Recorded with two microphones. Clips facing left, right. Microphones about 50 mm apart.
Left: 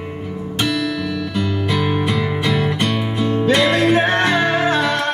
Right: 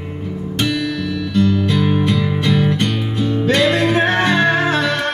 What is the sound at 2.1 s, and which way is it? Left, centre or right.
Music, left.